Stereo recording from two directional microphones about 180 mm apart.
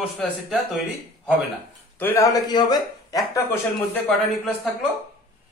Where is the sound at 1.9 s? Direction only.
15° left (ahead or behind).